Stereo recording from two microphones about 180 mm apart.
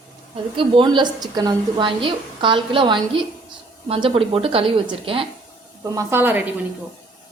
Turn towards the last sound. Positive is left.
turn(degrees=-10)  # may be behind; listen again after turning